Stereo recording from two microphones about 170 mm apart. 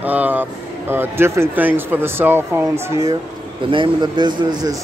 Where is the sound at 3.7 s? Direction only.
30° right (ahead or behind).